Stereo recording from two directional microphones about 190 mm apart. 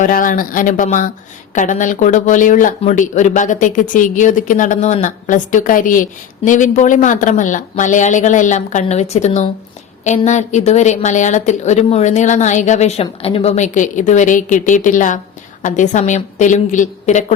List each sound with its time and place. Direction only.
0.0 s a woman's voice: 45° left (ahead or behind)